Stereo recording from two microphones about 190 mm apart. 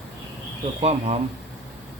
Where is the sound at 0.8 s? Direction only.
35° right (ahead or behind).